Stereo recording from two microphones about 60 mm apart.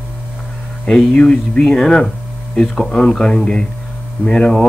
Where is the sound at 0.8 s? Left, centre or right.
Centre.